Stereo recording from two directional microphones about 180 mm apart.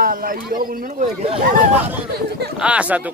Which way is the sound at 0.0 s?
50° right (ahead or behind).